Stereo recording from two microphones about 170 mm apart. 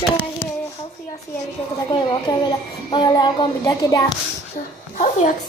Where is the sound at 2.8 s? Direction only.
25° left (ahead or behind).